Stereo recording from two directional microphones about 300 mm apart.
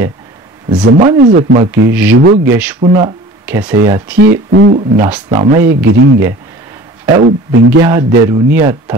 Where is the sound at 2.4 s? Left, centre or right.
Centre.